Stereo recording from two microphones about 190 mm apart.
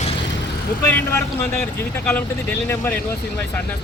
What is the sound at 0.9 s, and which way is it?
Speech, 10° left (ahead or behind).